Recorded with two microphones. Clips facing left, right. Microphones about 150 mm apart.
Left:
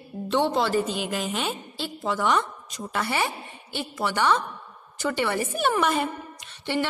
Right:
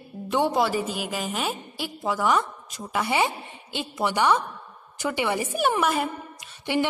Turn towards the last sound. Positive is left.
turn(degrees=-15)  # may be behind; listen again after turning